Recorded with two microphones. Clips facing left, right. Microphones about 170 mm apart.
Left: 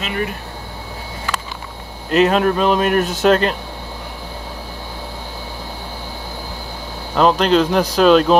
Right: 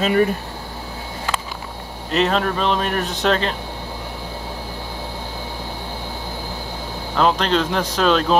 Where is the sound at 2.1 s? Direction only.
5° left (ahead or behind).